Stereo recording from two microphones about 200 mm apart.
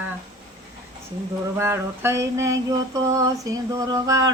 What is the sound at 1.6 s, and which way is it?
Mantra, 10° right (ahead or behind).